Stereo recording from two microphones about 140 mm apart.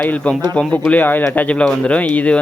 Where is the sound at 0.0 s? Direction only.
10° left (ahead or behind).